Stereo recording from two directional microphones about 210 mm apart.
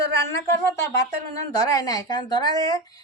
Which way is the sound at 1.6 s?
15° left (ahead or behind).